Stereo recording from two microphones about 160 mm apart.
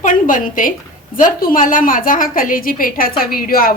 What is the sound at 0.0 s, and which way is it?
A woman's voice, 55° left (ahead or behind).